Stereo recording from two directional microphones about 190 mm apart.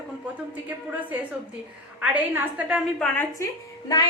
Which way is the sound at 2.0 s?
10° right (ahead or behind).